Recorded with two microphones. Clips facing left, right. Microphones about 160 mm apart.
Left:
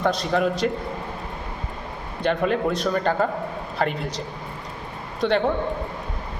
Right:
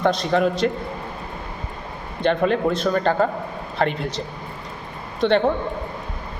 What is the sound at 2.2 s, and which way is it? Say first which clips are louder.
A man's voice: right 3 dB; 5° left (ahead or behind).